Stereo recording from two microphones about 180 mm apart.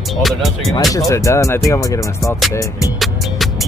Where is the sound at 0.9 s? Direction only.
15° left (ahead or behind).